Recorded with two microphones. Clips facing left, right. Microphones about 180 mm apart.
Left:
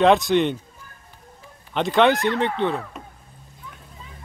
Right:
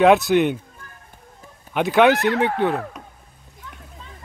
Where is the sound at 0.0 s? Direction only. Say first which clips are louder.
Right 2 dB; 5° right (ahead or behind).